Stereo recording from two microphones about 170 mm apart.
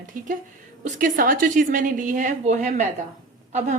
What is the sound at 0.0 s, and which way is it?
A woman's voice, 50° right (ahead or behind).